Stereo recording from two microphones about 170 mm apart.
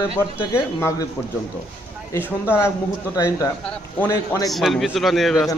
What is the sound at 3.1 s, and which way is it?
A man's voice, 20° left (ahead or behind).